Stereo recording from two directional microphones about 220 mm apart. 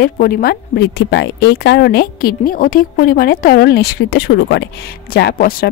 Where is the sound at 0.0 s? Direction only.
45° left (ahead or behind).